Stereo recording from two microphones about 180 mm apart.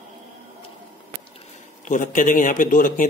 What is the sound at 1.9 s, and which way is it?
Speech, 45° left (ahead or behind).